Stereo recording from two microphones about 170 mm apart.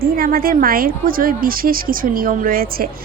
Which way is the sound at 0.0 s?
60° right (ahead or behind).